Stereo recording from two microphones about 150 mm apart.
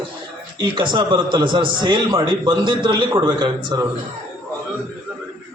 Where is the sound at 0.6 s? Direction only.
30° right (ahead or behind).